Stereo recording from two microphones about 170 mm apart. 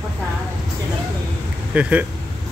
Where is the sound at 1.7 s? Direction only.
10° right (ahead or behind).